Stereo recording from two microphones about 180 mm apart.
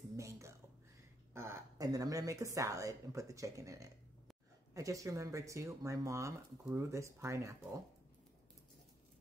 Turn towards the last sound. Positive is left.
turn(degrees=-15)  # may be behind; listen again after turning